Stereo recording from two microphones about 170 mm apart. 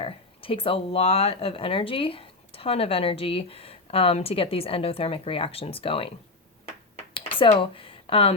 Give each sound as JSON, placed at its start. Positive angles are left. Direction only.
{"t": 0.0, "sound": "speech", "side_deg": 35}
{"t": 6.9, "sound": "a sound", "side_deg": 30}
{"t": 7.6, "sound": "speech", "side_deg": 30}